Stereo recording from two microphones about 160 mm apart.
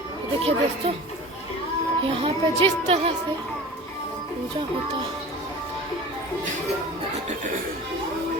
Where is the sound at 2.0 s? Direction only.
35° right (ahead or behind).